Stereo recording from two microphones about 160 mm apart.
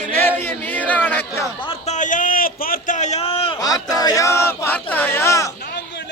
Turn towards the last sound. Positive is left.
turn(degrees=20)  # may be behind; listen again after turning